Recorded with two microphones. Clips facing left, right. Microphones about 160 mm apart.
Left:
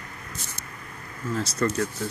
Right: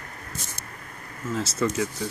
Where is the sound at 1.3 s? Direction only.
5° right (ahead or behind).